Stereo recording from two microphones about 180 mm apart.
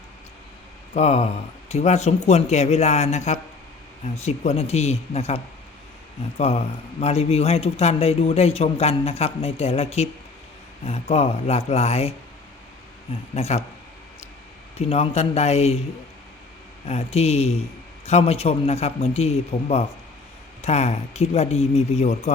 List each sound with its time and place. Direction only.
0.9 s speech: 35° left (ahead or behind)
13.3 s speech: 35° left (ahead or behind)
14.8 s speech: 35° left (ahead or behind)
16.8 s speech: 35° left (ahead or behind)